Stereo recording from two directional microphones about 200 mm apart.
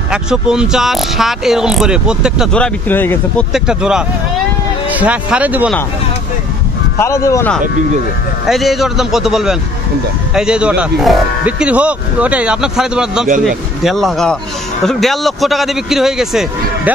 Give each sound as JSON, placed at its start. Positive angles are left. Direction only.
{"t": 0.1, "sound": "speech", "side_deg": -5}
{"t": 3.5, "sound": "speech", "side_deg": -5}
{"t": 7.0, "sound": "speech", "side_deg": 15}
{"t": 8.5, "sound": "speech", "side_deg": 0}